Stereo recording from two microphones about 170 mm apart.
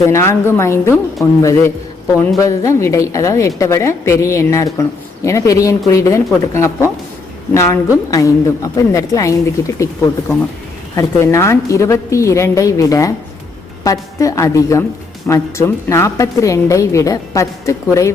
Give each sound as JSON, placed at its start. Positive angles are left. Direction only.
{"t": 0.0, "sound": "a woman's voice", "side_deg": 15}